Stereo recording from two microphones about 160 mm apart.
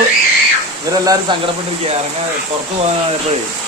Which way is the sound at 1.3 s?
30° right (ahead or behind).